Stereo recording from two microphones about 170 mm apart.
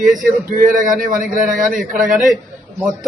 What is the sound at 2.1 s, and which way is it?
Speech, centre (ahead or behind).